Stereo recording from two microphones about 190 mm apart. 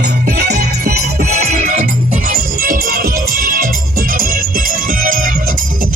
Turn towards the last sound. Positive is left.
turn(degrees=-45)  # may be behind; listen again after turning